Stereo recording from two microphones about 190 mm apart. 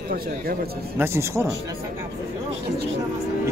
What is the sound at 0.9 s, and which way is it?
Speech, 15° right (ahead or behind).